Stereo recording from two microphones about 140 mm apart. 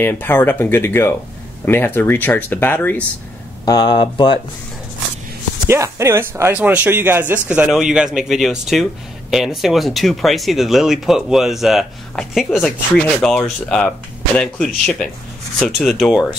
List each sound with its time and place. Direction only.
0.0 s speech: 15° left (ahead or behind)
3.6 s speech: 30° left (ahead or behind)
5.7 s speech: 20° right (ahead or behind); by 16.2 s centre (ahead or behind)